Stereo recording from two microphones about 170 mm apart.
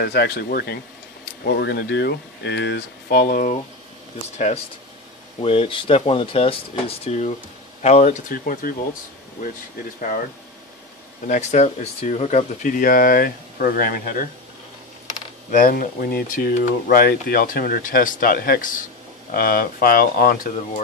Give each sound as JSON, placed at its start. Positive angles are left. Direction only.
{"t": 0.0, "sound": "speech", "side_deg": 70}
{"t": 5.4, "sound": "speech", "side_deg": 30}
{"t": 9.9, "sound": "speech", "side_deg": 55}
{"t": 11.2, "sound": "speech", "side_deg": 45}
{"t": 15.5, "sound": "speech", "side_deg": 55}